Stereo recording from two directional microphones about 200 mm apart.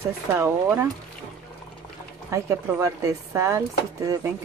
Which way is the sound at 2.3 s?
15° right (ahead or behind).